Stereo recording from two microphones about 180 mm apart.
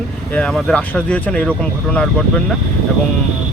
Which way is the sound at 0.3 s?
5° left (ahead or behind).